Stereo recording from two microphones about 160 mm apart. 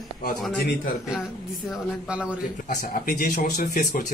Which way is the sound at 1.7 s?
5° right (ahead or behind).